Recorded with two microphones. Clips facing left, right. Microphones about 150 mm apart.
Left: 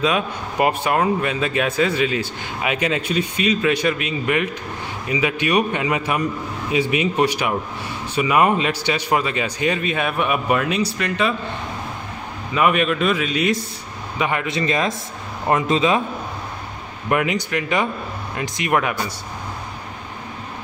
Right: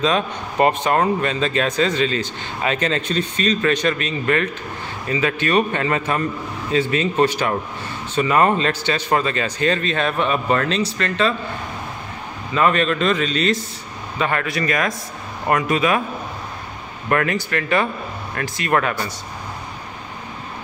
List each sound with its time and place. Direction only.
0.0 s speech: 10° left (ahead or behind)
12.5 s speech: 10° left (ahead or behind)
17.1 s speech: 15° left (ahead or behind)